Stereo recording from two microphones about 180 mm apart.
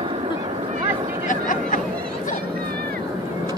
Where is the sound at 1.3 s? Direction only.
45° left (ahead or behind).